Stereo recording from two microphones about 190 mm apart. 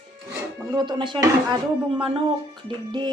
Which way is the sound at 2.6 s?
25° right (ahead or behind).